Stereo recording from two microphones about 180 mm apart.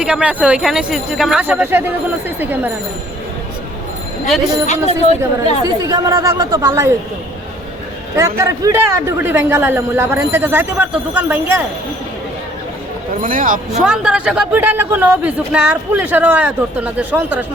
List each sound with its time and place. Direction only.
0.0 s speech: 5° right (ahead or behind)
4.6 s speech: 40° left (ahead or behind)
5.6 s speech: 20° right (ahead or behind)
8.1 s speech: 15° right (ahead or behind)
13.2 s speech: 50° right (ahead or behind)
13.8 s speech: 5° right (ahead or behind)